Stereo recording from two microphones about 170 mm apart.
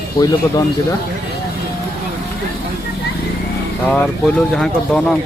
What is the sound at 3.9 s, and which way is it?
Speech, 5° left (ahead or behind).